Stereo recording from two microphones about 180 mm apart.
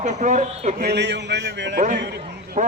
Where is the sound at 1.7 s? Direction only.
45° right (ahead or behind).